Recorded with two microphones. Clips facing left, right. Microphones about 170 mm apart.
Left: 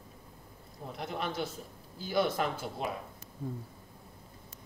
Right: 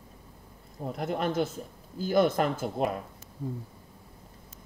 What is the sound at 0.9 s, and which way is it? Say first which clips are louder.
Speech: right 7 dB; 50° right (ahead or behind).